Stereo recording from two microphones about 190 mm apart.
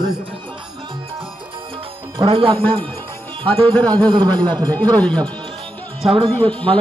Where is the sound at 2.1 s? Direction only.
25° right (ahead or behind).